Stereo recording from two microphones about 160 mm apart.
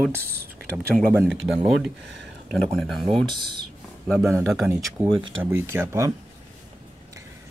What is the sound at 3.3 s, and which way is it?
Speech, 30° right (ahead or behind).